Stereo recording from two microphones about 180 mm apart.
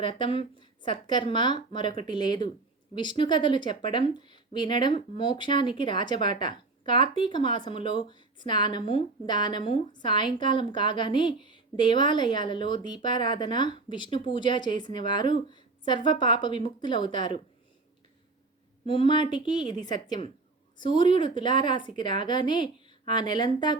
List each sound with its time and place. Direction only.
0.0 s a woman's voice: 25° left (ahead or behind)
15.4 s a sound: 25° left (ahead or behind)
16.0 s a woman's voice: 25° left (ahead or behind)
18.9 s a woman's voice: 25° left (ahead or behind)